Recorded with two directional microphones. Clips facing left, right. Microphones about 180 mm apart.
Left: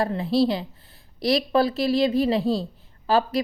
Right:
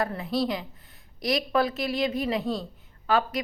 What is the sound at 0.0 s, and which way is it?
Speech, 30° left (ahead or behind).